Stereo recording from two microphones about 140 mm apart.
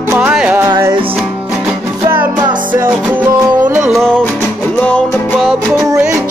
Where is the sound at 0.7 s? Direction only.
20° right (ahead or behind).